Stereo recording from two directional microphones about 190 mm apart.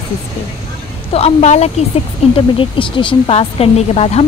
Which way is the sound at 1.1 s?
35° left (ahead or behind).